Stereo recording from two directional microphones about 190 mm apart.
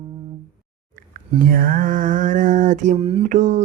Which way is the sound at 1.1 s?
50° right (ahead or behind).